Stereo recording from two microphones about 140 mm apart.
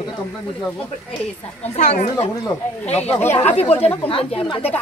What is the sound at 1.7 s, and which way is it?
Speech, 55° left (ahead or behind).